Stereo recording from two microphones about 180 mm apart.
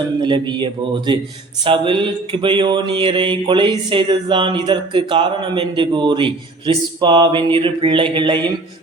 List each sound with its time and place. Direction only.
0.2 s mantra: 25° right (ahead or behind)